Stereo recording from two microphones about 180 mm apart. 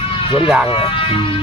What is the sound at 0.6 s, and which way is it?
Emergency vehicle, 30° left (ahead or behind).